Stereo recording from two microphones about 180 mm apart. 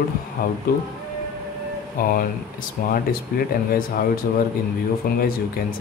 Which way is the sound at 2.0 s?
55° left (ahead or behind).